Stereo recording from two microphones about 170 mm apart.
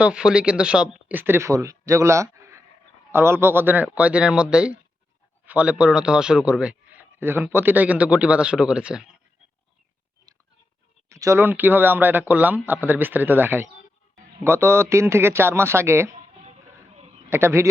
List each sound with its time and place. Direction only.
0.0 s a man's voice: 5° right (ahead or behind)
11.1 s a man's voice: 15° right (ahead or behind)
16.1 s music: 40° right (ahead or behind)
17.2 s a man's voice: 15° right (ahead or behind)